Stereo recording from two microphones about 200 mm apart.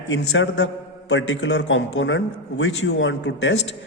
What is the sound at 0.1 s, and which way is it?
A man's voice, 65° left (ahead or behind).